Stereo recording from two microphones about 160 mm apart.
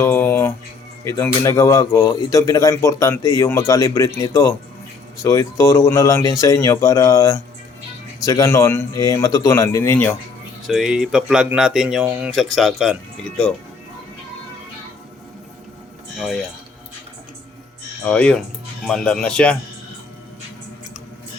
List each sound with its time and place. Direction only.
0.0 s a sound: 15° left (ahead or behind)
1.0 s speech: 20° left (ahead or behind)
10.7 s speech: 5° right (ahead or behind)
16.1 s speech: centre (ahead or behind)
18.0 s speech: 10° left (ahead or behind)